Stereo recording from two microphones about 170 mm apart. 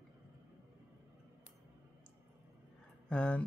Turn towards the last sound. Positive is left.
turn(degrees=5)  # may be behind; listen again after turning